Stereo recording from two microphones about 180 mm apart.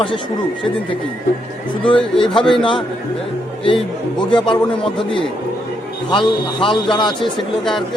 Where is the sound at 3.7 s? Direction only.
25° left (ahead or behind).